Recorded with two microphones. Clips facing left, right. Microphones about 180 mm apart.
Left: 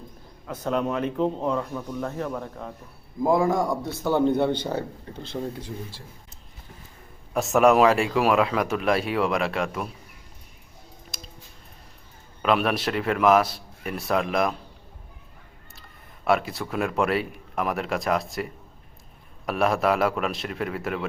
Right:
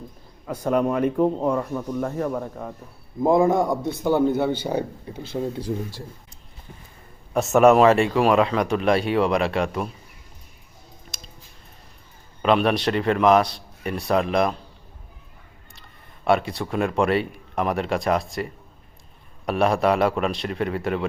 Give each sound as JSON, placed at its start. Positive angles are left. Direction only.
{"t": 0.4, "sound": "speech", "side_deg": -10}
{"t": 3.2, "sound": "a man's voice", "side_deg": -20}
{"t": 4.3, "sound": "speech", "side_deg": -5}
{"t": 7.3, "sound": "speech", "side_deg": 0}
{"t": 11.1, "sound": "a sound", "side_deg": 0}
{"t": 12.4, "sound": "speech", "side_deg": 0}
{"t": 16.2, "sound": "speech", "side_deg": 0}